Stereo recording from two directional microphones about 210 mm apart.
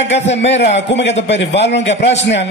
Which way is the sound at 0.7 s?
55° left (ahead or behind).